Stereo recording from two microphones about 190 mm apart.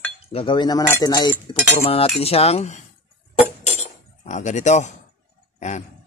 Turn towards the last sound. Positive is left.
turn(degrees=40)  # may be behind; listen again after turning